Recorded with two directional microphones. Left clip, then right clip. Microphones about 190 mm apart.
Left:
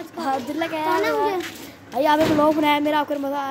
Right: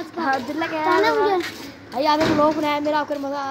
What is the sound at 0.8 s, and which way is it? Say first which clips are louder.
Speech: right 4 dB; 20° right (ahead or behind).